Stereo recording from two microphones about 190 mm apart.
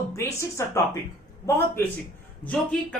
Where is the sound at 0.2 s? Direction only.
15° left (ahead or behind).